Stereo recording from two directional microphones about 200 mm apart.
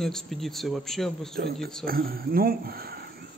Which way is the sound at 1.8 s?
50° right (ahead or behind).